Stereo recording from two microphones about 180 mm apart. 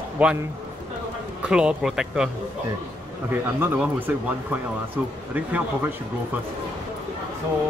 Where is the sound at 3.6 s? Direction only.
10° right (ahead or behind).